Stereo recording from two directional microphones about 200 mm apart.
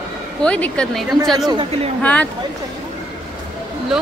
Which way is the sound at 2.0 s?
5° left (ahead or behind).